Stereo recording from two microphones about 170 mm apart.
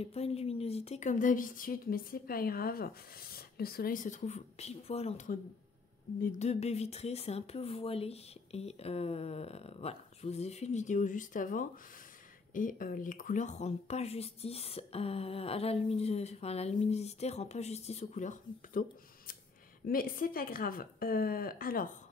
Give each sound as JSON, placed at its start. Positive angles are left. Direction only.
{"t": 0.0, "sound": "a woman's voice", "side_deg": 35}